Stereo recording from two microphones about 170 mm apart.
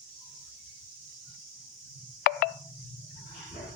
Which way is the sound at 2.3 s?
60° left (ahead or behind).